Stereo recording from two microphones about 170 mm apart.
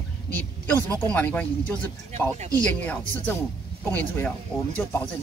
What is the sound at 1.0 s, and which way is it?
Speech, 10° left (ahead or behind).